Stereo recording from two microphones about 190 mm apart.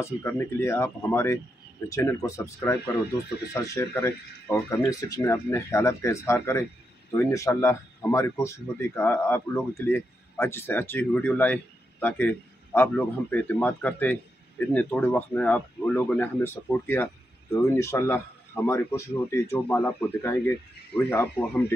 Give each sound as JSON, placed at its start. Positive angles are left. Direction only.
{"t": 0.0, "sound": "speech", "side_deg": 10}